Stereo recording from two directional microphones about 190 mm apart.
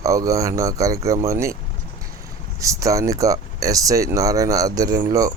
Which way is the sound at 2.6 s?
15° right (ahead or behind).